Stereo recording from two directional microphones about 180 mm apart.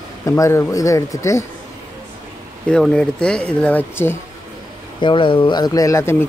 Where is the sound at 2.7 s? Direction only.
5° left (ahead or behind).